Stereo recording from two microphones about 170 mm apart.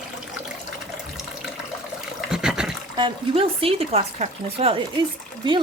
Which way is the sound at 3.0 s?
30° right (ahead or behind).